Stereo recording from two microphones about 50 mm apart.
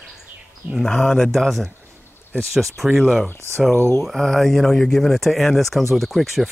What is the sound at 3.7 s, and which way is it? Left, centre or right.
Speech, left.